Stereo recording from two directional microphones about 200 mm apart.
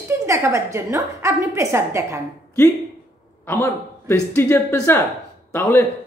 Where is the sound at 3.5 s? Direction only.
10° left (ahead or behind).